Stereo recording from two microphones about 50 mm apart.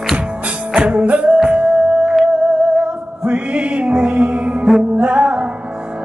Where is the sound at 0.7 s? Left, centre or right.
Right.